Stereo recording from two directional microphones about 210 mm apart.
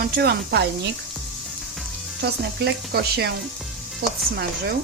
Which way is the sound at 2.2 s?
50° right (ahead or behind).